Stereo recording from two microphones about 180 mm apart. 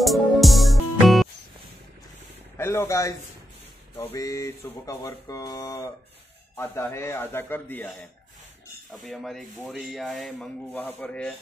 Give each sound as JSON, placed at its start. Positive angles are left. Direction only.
{"t": 0.0, "sound": "music", "side_deg": 0}
{"t": 2.5, "sound": "speech", "side_deg": 15}
{"t": 3.9, "sound": "a sound", "side_deg": 15}
{"t": 8.9, "sound": "speech", "side_deg": 0}